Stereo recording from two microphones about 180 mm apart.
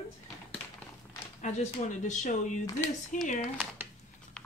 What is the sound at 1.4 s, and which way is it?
Speech, 40° left (ahead or behind).